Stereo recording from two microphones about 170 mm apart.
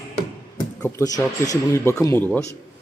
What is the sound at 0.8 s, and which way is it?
A man's voice, 20° left (ahead or behind).